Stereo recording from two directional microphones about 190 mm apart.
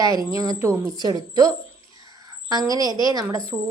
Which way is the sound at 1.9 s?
20° right (ahead or behind).